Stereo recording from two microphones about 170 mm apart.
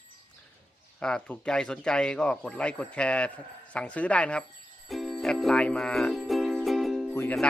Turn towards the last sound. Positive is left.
turn(degrees=15)  # may be behind; listen again after turning